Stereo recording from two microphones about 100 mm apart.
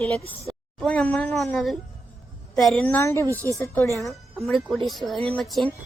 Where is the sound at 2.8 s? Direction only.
20° left (ahead or behind).